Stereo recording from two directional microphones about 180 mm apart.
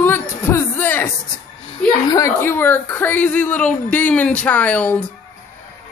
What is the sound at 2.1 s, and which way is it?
A woman's voice, 15° left (ahead or behind).